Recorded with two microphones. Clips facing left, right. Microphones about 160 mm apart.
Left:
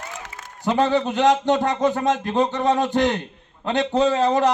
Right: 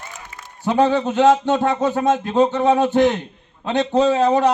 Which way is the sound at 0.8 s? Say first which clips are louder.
Right 4 dB; 15° right (ahead or behind).